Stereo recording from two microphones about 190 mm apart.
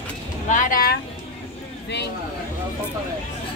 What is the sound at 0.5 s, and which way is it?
Speech, 45° left (ahead or behind).